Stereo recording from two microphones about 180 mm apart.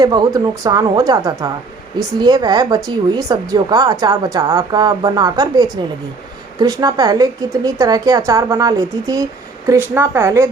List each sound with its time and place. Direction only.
0.0 s a woman's voice: 20° right (ahead or behind)